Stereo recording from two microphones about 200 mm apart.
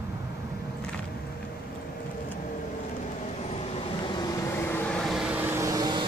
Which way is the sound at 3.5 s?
25° left (ahead or behind).